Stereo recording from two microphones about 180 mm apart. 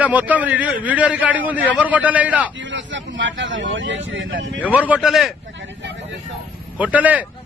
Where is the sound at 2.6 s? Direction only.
90° right.